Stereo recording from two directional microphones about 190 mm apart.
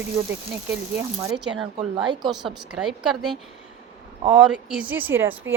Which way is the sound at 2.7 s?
5° right (ahead or behind).